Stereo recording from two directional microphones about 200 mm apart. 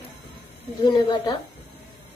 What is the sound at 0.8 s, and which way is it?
Speech, 20° left (ahead or behind).